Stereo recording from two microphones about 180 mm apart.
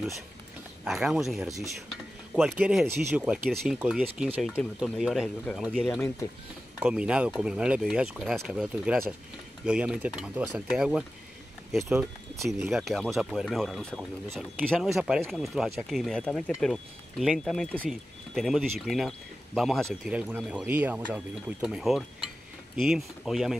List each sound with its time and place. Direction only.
0.8 s speech: centre (ahead or behind)
6.8 s speech: 5° right (ahead or behind)